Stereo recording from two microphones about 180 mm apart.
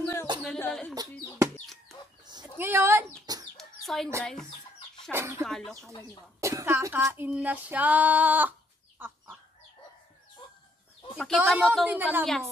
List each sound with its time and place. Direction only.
0.0 s a sound: 15° left (ahead or behind)
2.5 s a sound: 10° right (ahead or behind)
3.5 s chicken: centre (ahead or behind)
4.2 s a woman's voice: centre (ahead or behind)
5.1 s female singing: 15° right (ahead or behind)
5.4 s a woman's voice: centre (ahead or behind)
6.4 s female singing: 15° right (ahead or behind)
11.1 s a woman's voice: centre (ahead or behind)